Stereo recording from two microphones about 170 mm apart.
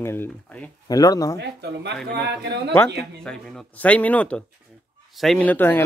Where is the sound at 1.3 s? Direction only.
80° right.